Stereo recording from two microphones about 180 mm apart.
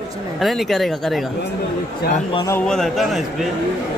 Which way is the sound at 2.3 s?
15° left (ahead or behind).